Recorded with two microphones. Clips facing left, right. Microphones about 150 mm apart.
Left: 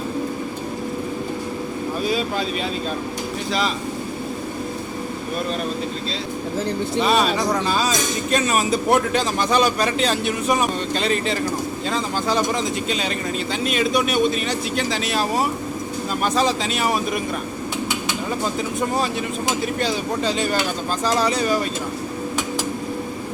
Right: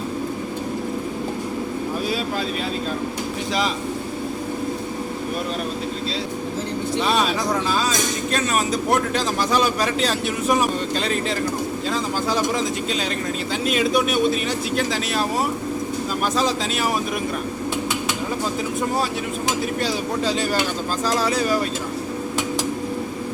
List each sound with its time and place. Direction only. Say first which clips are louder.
7.0 s a man's voice: left 3 dB; centre (ahead or behind)
19.8 s a man's voice: left 1 dB; 5° right (ahead or behind)